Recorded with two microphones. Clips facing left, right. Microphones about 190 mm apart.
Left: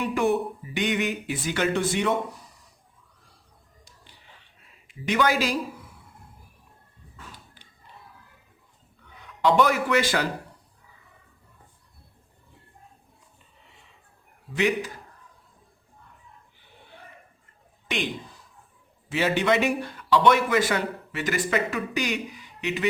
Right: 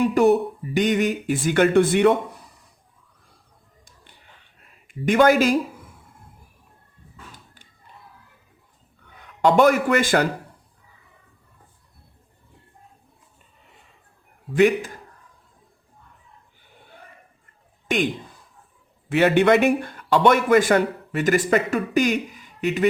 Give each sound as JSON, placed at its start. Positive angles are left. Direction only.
{"t": 0.0, "sound": "speech", "side_deg": -40}
{"t": 4.9, "sound": "speech", "side_deg": -50}
{"t": 9.4, "sound": "speech", "side_deg": -50}
{"t": 14.5, "sound": "speech", "side_deg": -50}
{"t": 17.8, "sound": "a man's voice", "side_deg": -45}
{"t": 19.0, "sound": "speech", "side_deg": -60}